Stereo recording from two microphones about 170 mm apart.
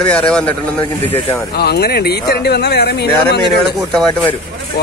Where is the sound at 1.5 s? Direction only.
70° left (ahead or behind).